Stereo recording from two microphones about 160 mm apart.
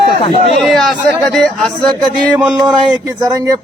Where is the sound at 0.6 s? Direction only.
Centre (ahead or behind).